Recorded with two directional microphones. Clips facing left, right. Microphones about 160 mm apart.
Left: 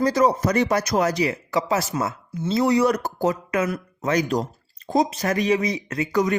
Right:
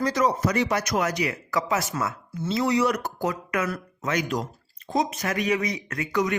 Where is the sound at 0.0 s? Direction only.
30° left (ahead or behind).